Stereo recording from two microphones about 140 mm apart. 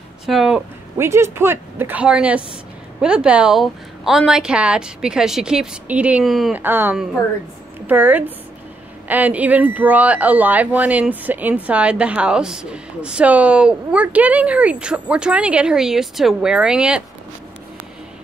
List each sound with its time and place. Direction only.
0.3 s a sound: centre (ahead or behind)
0.9 s a woman's voice: 20° right (ahead or behind); by 6.5 s centre (ahead or behind)
6.5 s speech: 15° right (ahead or behind)